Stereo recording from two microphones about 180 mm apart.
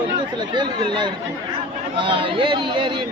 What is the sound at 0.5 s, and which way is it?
Speech, 25° right (ahead or behind).